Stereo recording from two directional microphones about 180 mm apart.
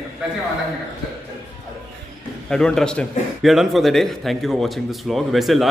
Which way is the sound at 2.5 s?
5° left (ahead or behind).